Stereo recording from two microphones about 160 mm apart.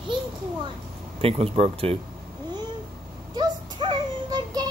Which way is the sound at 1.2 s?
35° right (ahead or behind).